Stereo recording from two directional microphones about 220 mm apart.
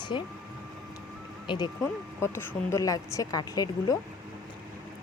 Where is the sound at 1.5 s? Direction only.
20° left (ahead or behind).